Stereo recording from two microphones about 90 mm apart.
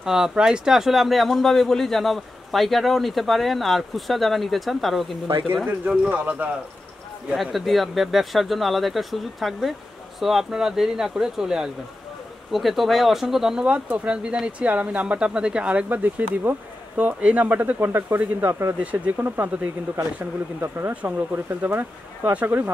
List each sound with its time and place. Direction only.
0.0 s speech: 5° right (ahead or behind)
5.9 s speech: 15° right (ahead or behind)
7.3 s speech: centre (ahead or behind); by 18.8 s 25° right (ahead or behind)
18.8 s speech: 15° right (ahead or behind)